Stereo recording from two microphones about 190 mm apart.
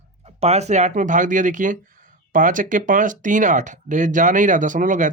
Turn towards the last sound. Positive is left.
turn(degrees=-40)  # may be behind; listen again after turning